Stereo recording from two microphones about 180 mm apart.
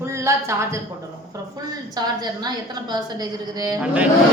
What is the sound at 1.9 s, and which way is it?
A woman's voice, 20° right (ahead or behind).